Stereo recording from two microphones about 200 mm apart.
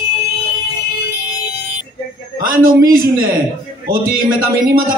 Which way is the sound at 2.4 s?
45° right (ahead or behind).